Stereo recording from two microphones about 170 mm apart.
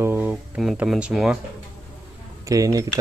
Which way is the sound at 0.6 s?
Centre (ahead or behind).